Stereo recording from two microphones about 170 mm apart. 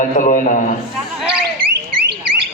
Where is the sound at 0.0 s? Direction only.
50° left (ahead or behind).